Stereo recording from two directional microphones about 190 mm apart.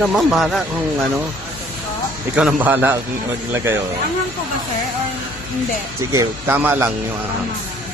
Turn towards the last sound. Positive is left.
turn(degrees=-10)  # may be behind; listen again after turning